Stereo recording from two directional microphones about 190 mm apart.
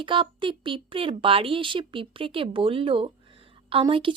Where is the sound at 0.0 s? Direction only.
25° right (ahead or behind).